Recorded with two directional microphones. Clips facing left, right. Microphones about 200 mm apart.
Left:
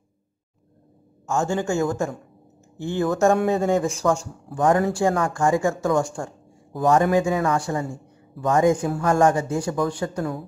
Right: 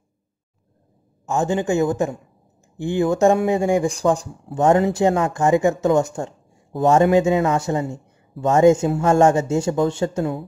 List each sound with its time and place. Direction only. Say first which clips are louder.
1.2 s speech: right 3 dB; 20° right (ahead or behind)